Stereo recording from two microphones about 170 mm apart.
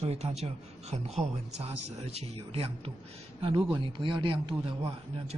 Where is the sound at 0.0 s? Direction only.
40° right (ahead or behind).